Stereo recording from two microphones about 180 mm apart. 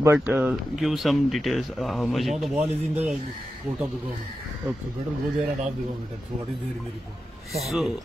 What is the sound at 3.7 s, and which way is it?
Speech, 5° right (ahead or behind).